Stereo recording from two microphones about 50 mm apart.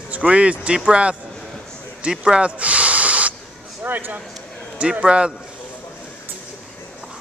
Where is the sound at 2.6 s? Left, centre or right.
Right.